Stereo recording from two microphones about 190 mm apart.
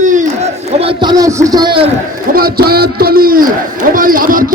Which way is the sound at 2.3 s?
50° right (ahead or behind).